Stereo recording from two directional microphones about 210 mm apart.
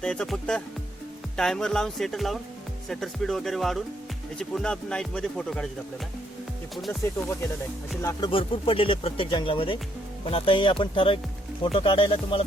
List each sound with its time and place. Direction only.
0.0 s speech: 5° left (ahead or behind)
8.0 s speech: 20° left (ahead or behind)